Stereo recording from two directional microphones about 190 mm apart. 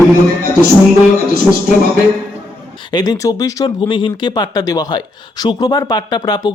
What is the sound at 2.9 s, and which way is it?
Speech, 20° left (ahead or behind).